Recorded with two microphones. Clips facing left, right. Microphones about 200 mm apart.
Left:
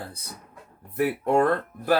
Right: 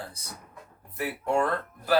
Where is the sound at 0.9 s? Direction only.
55° left (ahead or behind).